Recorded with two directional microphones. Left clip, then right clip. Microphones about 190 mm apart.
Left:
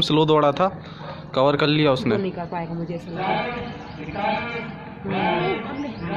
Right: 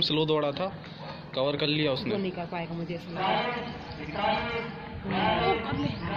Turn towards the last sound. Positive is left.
turn(degrees=10)  # may be behind; listen again after turning